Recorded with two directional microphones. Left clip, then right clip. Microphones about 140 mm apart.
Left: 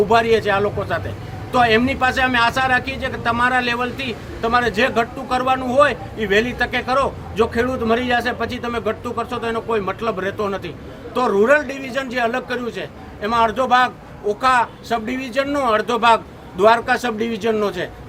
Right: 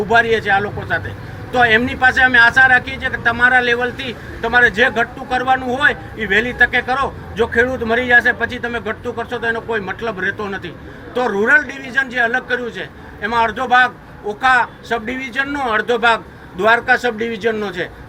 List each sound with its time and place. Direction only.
0.1 s a man's voice: 40° left (ahead or behind)